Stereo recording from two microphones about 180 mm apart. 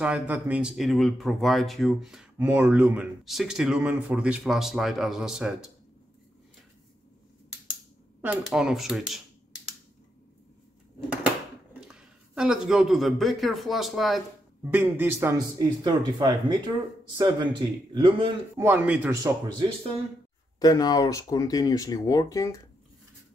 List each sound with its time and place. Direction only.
0.0 s speech: 10° right (ahead or behind)
8.2 s speech: 5° right (ahead or behind)
11.9 s speech: 5° right (ahead or behind)
14.6 s speech: 10° right (ahead or behind); by 18.3 s 30° right (ahead or behind)
18.6 s speech: 10° right (ahead or behind)
20.5 s speech: 20° left (ahead or behind)